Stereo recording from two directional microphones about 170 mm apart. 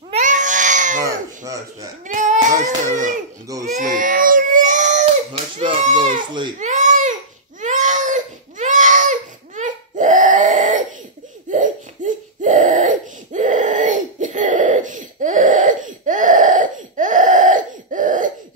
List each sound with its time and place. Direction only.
0.1 s baby cry: 45° right (ahead or behind)
1.4 s speech: 20° right (ahead or behind)
2.0 s a sound: 50° right (ahead or behind)
2.6 s crying: 45° right (ahead or behind)
3.6 s baby cry: 50° right (ahead or behind)
5.0 s a sound: 30° right (ahead or behind)
6.6 s baby cry: 45° right (ahead or behind)
7.6 s crying: 45° right (ahead or behind)
11.5 s a sound: 45° right (ahead or behind)